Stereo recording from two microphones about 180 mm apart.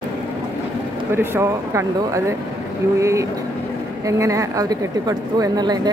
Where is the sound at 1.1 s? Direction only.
15° right (ahead or behind).